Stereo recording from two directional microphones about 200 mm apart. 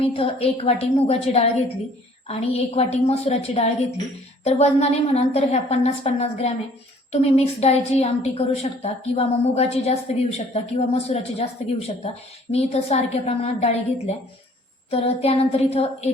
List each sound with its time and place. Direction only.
0.0 s a woman's voice: 30° left (ahead or behind)
14.8 s a woman's voice: 30° left (ahead or behind)